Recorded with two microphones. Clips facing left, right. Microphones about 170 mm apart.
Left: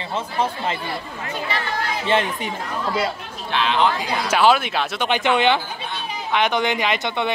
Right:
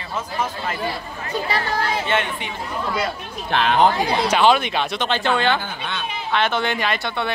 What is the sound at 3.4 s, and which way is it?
Speech, 50° right (ahead or behind).